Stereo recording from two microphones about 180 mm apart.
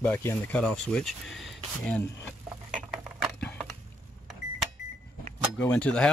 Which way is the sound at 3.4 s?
5° left (ahead or behind).